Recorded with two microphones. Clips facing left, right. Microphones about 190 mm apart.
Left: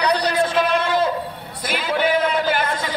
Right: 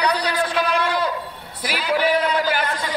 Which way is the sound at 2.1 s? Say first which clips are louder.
Left 1 dB; 25° left (ahead or behind).